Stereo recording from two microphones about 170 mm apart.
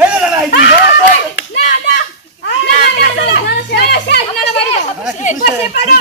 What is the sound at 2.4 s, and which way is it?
Children playing, 80° left.